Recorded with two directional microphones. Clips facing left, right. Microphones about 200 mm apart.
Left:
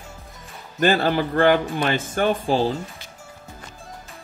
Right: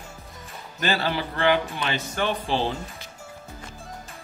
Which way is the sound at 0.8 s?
50° left (ahead or behind).